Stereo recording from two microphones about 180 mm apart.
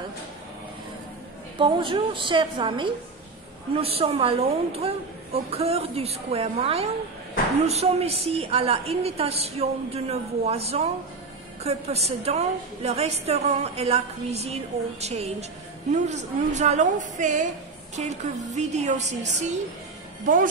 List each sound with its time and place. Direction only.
1.6 s a woman's voice: 25° right (ahead or behind)